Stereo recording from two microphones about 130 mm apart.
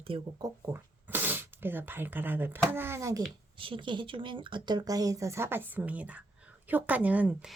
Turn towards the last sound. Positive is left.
turn(degrees=-10)  # may be behind; listen again after turning